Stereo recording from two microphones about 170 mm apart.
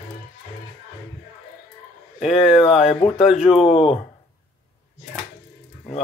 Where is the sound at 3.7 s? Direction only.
35° left (ahead or behind).